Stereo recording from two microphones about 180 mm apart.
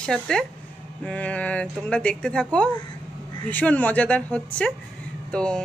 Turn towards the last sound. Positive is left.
turn(degrees=5)  # may be behind; listen again after turning